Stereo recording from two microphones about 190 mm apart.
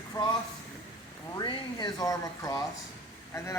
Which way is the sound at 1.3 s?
20° left (ahead or behind).